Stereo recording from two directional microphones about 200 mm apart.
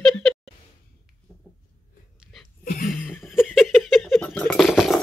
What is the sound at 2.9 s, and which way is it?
Laughter, centre (ahead or behind).